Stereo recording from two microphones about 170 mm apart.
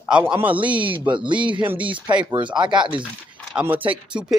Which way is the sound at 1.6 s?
10° right (ahead or behind).